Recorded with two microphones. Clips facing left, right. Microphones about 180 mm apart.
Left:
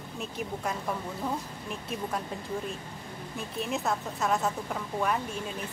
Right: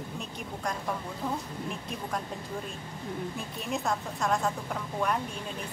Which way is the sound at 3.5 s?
Centre (ahead or behind).